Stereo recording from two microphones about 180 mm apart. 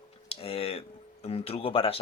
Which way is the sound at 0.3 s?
30° left (ahead or behind).